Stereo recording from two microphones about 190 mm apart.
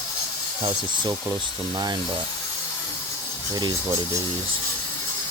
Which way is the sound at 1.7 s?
20° right (ahead or behind).